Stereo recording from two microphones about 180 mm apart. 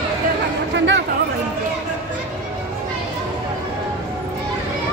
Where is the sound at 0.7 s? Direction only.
90° right.